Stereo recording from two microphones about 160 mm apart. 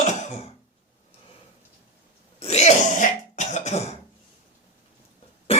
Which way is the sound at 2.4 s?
40° left (ahead or behind).